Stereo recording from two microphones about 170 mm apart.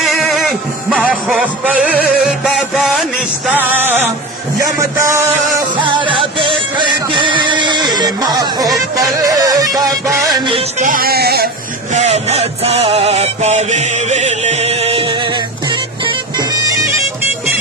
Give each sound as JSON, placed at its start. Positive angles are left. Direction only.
{"t": 0.0, "sound": "music", "side_deg": 0}
{"t": 5.7, "sound": "music", "side_deg": -30}
{"t": 10.8, "sound": "music", "side_deg": -55}
{"t": 11.9, "sound": "music", "side_deg": -40}